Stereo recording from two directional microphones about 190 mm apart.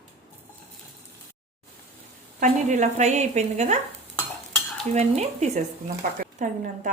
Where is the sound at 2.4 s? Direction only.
40° right (ahead or behind).